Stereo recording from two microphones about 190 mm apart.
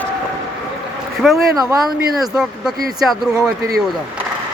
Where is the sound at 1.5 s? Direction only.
20° right (ahead or behind).